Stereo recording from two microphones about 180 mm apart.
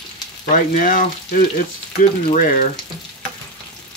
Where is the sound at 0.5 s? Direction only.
45° left (ahead or behind).